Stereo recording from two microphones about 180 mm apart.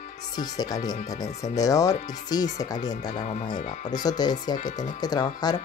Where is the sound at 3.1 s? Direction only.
40° left (ahead or behind).